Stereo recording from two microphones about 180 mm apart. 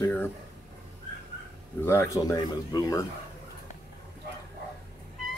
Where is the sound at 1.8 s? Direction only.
15° left (ahead or behind).